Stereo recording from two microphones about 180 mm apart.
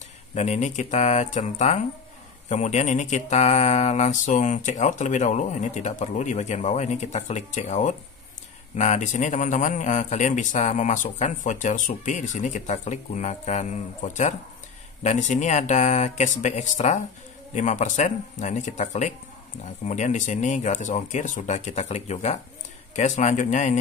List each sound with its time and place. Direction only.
0.3 s a man's voice: 40° left (ahead or behind)